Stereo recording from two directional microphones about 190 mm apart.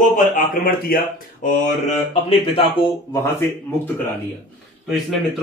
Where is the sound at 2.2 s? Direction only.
25° left (ahead or behind); by 3.9 s 10° left (ahead or behind).